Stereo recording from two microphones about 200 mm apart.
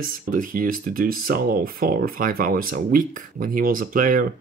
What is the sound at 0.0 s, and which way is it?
Speech, 45° right (ahead or behind).